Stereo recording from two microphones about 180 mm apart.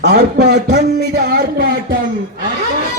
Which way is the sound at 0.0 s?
65° right (ahead or behind).